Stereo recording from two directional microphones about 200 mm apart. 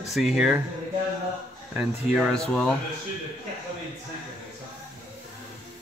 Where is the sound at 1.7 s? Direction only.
5° right (ahead or behind).